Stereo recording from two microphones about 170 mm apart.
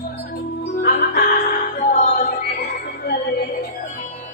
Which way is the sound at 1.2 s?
50° left (ahead or behind).